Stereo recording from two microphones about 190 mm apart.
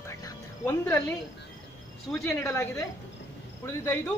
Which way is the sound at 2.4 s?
15° left (ahead or behind).